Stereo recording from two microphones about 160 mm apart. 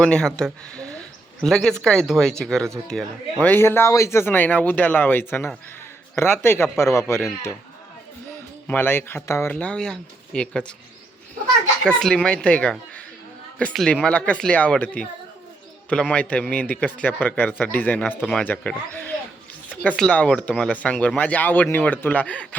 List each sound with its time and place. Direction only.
0.0 s speech: 5° left (ahead or behind)
8.6 s speech: 10° left (ahead or behind)
11.9 s speech: 5° left (ahead or behind)